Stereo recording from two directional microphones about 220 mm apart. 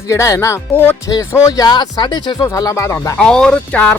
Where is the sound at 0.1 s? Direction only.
15° left (ahead or behind).